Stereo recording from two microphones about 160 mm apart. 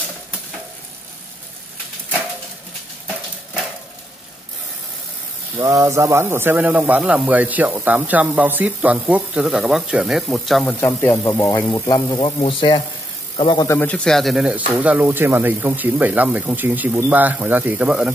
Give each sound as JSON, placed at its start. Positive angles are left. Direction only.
{"t": 5.6, "sound": "a man's voice", "side_deg": -20}
{"t": 10.8, "sound": "a man's voice", "side_deg": 15}
{"t": 12.2, "sound": "a man's voice", "side_deg": 35}
{"t": 13.7, "sound": "a man's voice", "side_deg": 10}